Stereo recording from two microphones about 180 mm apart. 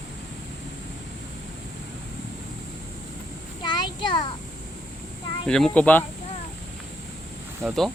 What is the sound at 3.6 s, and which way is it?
Child singing, 25° left (ahead or behind).